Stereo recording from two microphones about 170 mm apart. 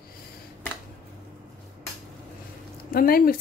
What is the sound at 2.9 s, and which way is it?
Speech, 60° left (ahead or behind).